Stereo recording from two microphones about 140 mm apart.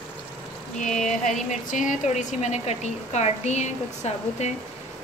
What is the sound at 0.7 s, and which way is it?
A woman's voice, 60° left (ahead or behind).